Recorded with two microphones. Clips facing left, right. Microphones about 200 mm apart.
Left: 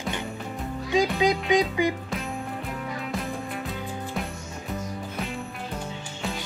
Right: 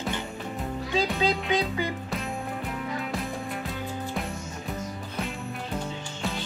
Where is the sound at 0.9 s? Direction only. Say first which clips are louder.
Left 4 dB; 15° left (ahead or behind).